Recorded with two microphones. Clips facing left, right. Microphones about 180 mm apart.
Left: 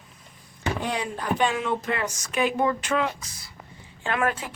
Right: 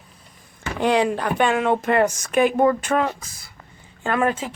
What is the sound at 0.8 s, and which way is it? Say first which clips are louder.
Speech: right 15 dB; 90° right.